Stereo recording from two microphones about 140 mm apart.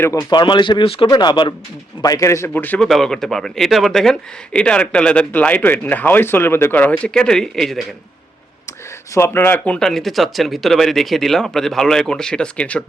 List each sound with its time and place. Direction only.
0.0 s a man's voice: 25° left (ahead or behind)
2.5 s speech: 10° left (ahead or behind)
9.1 s speech: 15° left (ahead or behind)